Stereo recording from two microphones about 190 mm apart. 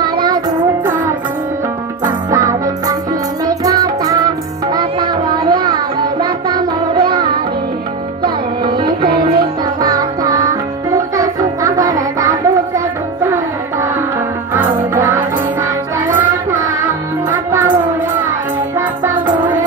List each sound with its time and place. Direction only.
2.0 s music: 20° right (ahead or behind)
4.7 s a sound: 25° right (ahead or behind)
6.2 s music: 25° right (ahead or behind)
8.7 s music: 25° right (ahead or behind)
14.5 s music: 15° right (ahead or behind)
17.3 s music: 10° right (ahead or behind)